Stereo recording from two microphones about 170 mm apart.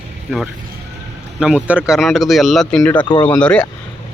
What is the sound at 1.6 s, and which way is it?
Speech, 5° right (ahead or behind).